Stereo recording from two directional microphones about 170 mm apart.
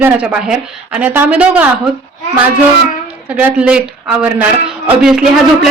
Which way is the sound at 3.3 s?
10° right (ahead or behind).